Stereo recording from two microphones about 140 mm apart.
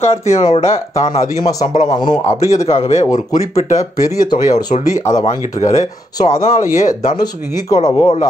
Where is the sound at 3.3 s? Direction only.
60° left (ahead or behind).